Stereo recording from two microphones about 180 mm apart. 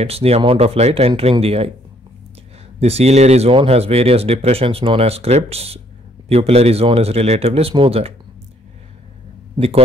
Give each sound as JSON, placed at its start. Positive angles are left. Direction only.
{"t": 0.0, "sound": "speech", "side_deg": -35}
{"t": 2.8, "sound": "speech", "side_deg": -35}